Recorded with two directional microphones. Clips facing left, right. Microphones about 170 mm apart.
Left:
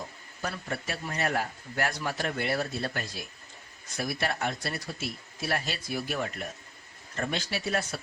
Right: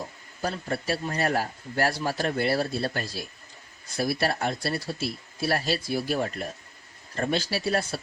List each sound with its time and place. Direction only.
0.4 s a man's voice: 30° right (ahead or behind)